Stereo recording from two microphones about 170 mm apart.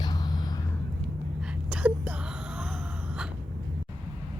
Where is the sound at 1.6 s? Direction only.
10° right (ahead or behind).